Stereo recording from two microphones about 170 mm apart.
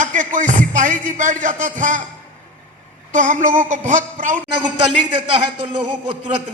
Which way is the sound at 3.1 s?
45° right (ahead or behind).